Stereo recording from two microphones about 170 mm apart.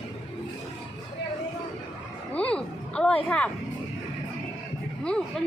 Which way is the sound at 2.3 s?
5° left (ahead or behind).